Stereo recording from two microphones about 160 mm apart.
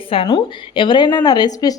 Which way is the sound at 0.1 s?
30° left (ahead or behind).